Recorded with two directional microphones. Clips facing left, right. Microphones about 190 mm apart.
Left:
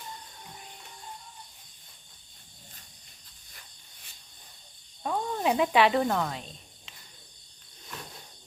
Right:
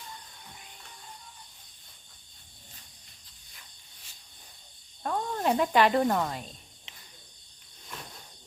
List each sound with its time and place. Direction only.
5.0 s speech: 5° left (ahead or behind)
6.9 s cricket: 25° right (ahead or behind)